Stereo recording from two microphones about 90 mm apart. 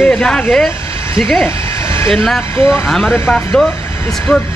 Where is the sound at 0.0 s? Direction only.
10° left (ahead or behind).